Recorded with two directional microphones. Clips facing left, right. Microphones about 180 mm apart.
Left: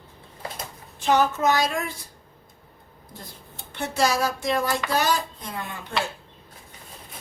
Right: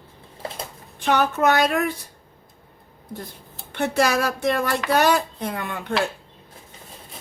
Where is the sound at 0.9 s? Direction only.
60° right (ahead or behind).